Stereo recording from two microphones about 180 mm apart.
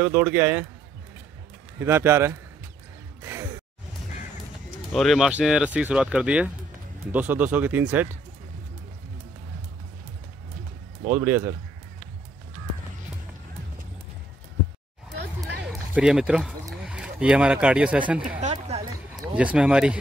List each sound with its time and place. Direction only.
0.0 s speech: 10° right (ahead or behind)
1.8 s speech: 15° right (ahead or behind)
4.9 s speech: centre (ahead or behind)
11.1 s speech: 10° right (ahead or behind)
15.7 s speech: 5° right (ahead or behind)
18.4 s a sound: 35° right (ahead or behind)
19.3 s speech: 5° right (ahead or behind)